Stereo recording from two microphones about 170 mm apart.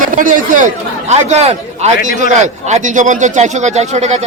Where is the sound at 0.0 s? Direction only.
50° right (ahead or behind).